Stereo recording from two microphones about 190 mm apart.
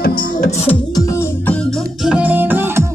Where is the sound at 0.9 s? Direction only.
15° left (ahead or behind).